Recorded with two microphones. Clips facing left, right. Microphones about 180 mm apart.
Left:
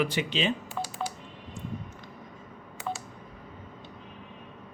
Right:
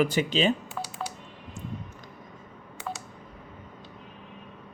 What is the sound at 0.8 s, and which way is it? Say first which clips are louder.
Telephone dialing: left 2 dB; centre (ahead or behind).